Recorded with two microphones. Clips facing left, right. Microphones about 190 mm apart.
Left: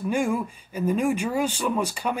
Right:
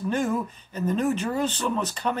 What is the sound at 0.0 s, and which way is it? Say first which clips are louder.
Speech: left 1 dB; 10° left (ahead or behind).